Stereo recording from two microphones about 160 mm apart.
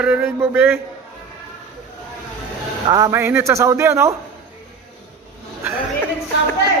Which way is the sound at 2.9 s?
25° right (ahead or behind).